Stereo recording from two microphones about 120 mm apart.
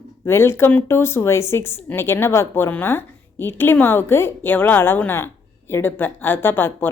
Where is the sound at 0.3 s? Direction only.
20° left (ahead or behind).